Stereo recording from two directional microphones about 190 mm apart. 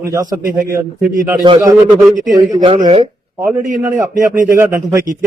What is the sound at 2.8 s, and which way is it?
Speech, 30° right (ahead or behind).